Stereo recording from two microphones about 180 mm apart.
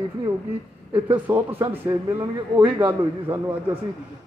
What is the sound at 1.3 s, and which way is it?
A man's voice, 15° right (ahead or behind).